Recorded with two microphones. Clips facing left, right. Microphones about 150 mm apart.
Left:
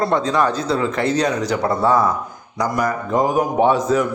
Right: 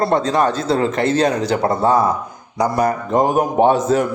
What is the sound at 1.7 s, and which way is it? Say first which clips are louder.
Speech: right 1 dB; 20° right (ahead or behind).